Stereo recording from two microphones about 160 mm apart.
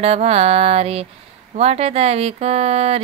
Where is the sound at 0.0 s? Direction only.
40° right (ahead or behind).